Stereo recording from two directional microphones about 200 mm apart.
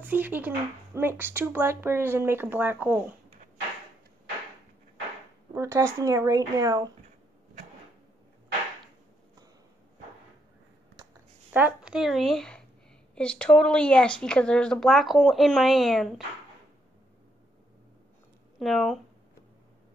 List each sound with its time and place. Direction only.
0.0 s speech: 10° right (ahead or behind)
5.5 s speech: 15° right (ahead or behind)
11.5 s a woman's voice: 5° right (ahead or behind)
18.6 s speech: centre (ahead or behind)